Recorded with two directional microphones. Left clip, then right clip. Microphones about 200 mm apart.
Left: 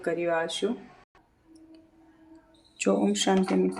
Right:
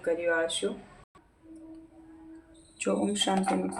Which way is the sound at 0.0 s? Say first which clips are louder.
Even; 40° left (ahead or behind).